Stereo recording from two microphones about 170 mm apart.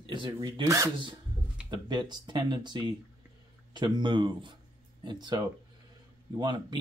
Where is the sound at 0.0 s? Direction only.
30° right (ahead or behind).